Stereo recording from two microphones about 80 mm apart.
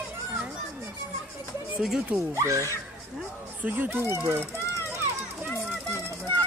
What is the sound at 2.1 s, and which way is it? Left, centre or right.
Speech, right.